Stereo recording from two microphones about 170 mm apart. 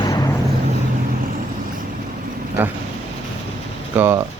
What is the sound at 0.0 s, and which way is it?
Vehicle, 20° left (ahead or behind).